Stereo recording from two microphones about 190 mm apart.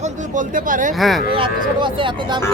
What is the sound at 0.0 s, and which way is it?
Speech, 40° right (ahead or behind).